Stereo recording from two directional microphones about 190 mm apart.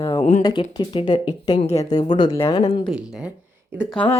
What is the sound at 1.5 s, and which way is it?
Speech, 35° left (ahead or behind).